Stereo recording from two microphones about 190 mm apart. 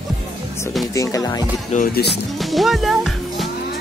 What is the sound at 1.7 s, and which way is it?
Speech, 50° left (ahead or behind).